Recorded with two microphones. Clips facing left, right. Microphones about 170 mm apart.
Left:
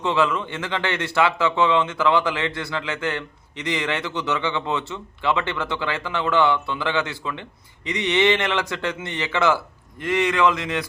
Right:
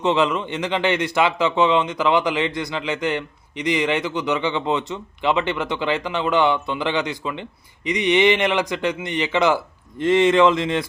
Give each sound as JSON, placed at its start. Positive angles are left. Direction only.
{"t": 0.0, "sound": "speech", "side_deg": -20}